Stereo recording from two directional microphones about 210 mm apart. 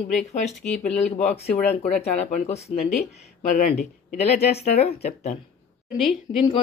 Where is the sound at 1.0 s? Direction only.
30° left (ahead or behind).